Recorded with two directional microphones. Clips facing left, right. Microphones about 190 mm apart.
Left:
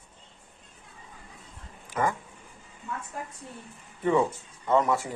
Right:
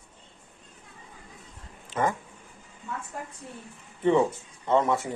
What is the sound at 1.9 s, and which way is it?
Speech, 25° right (ahead or behind).